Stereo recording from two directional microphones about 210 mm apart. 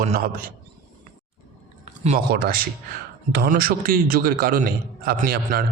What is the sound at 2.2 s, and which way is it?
A man's voice, 45° right (ahead or behind).